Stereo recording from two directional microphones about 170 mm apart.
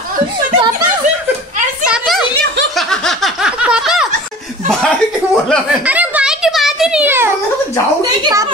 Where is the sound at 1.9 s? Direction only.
Centre (ahead or behind).